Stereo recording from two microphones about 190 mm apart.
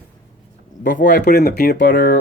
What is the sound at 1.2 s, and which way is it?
Speech, 55° left (ahead or behind).